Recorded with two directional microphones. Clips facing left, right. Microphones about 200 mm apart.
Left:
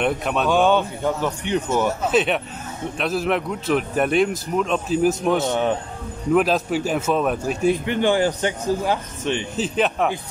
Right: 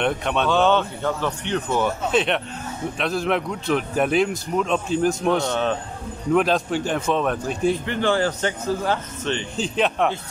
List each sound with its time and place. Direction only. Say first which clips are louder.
0.0 s a man's voice: left 1 dB; 5° left (ahead or behind)
5.4 s a man's voice: left 2 dB; 20° left (ahead or behind)
6.3 s a man's voice: left 1 dB; 5° left (ahead or behind)
9.8 s speech: even; centre (ahead or behind)